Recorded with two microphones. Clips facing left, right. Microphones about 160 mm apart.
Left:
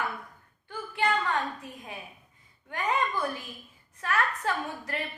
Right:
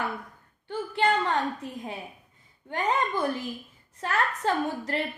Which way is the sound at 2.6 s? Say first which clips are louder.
Right 2 dB; 30° right (ahead or behind).